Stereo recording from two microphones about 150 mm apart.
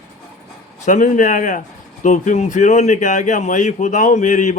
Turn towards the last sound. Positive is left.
turn(degrees=55)  # may be behind; listen again after turning